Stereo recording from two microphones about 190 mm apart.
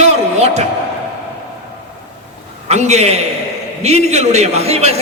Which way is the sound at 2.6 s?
35° right (ahead or behind).